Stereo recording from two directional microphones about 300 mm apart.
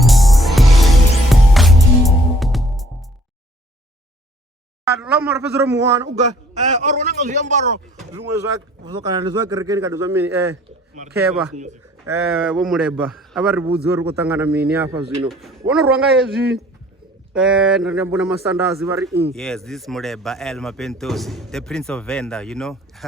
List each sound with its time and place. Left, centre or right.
0.0 s music: centre
4.9 s speech: centre
6.6 s a man's voice: right
7.9 s speech: centre
11.5 s a man's voice: right
12.0 s speech: centre
17.3 s speech: centre
19.3 s speech: centre